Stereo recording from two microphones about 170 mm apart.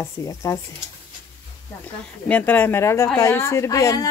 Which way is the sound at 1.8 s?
10° left (ahead or behind).